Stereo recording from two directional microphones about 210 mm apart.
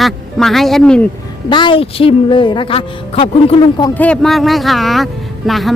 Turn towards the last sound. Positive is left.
turn(degrees=0)  # may be behind; listen again after turning